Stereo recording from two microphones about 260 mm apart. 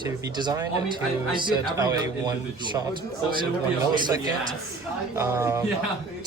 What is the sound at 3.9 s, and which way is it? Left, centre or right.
A man's voice, centre.